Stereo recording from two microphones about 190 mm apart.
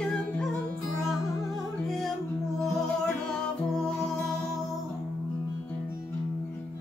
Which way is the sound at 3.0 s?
5° left (ahead or behind).